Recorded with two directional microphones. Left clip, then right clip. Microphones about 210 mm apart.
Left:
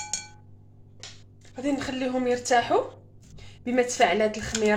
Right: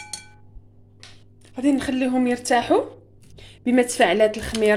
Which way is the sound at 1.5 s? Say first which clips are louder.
Right 7 dB; 40° right (ahead or behind).